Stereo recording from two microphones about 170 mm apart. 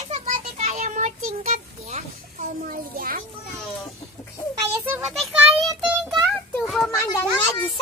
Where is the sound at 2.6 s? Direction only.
55° right (ahead or behind).